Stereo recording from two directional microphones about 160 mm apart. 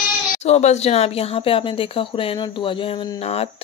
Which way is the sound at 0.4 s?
45° left (ahead or behind).